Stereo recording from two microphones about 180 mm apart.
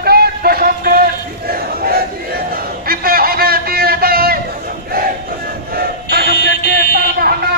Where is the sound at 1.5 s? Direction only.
55° right (ahead or behind).